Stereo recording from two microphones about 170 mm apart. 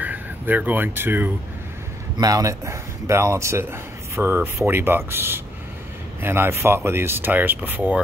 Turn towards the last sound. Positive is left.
turn(degrees=-10)  # may be behind; listen again after turning